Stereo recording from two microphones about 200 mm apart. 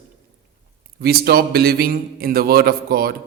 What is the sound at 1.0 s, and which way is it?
A man's voice, 50° right (ahead or behind).